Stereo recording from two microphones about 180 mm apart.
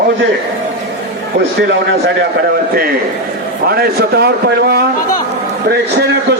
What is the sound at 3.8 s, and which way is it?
A man's voice, 60° right (ahead or behind).